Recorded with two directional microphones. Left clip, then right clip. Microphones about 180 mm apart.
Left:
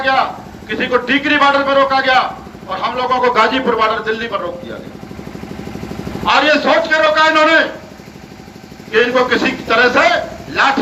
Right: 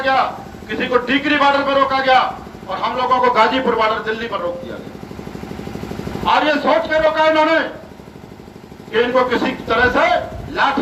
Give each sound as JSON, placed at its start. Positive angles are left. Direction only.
{"t": 0.0, "sound": "a sound", "side_deg": -35}
{"t": 0.7, "sound": "a man's voice", "side_deg": -35}
{"t": 6.2, "sound": "a man's voice", "side_deg": -30}
{"t": 8.9, "sound": "a man's voice", "side_deg": -30}